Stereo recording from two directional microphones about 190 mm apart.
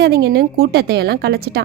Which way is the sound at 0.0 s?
55° right (ahead or behind).